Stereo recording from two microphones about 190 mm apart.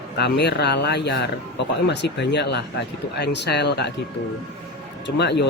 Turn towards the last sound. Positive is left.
turn(degrees=65)  # may be behind; listen again after turning